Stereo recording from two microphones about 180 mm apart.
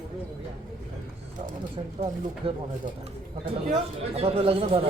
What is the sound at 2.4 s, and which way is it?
Speech, 30° right (ahead or behind).